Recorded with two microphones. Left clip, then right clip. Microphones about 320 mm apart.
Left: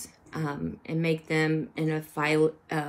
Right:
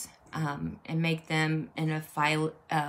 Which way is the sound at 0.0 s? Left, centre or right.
Centre.